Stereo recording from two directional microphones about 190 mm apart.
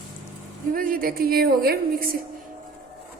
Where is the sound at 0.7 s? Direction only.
45° right (ahead or behind).